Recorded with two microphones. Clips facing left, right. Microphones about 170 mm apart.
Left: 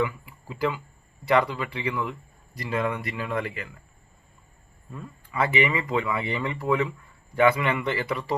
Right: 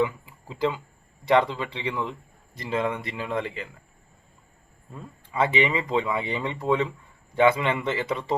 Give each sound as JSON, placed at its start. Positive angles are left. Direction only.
{"t": 0.0, "sound": "a sound", "side_deg": -25}
{"t": 1.2, "sound": "speech", "side_deg": -20}
{"t": 4.9, "sound": "speech", "side_deg": -20}